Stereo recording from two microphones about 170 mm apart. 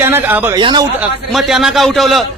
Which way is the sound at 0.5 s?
25° right (ahead or behind).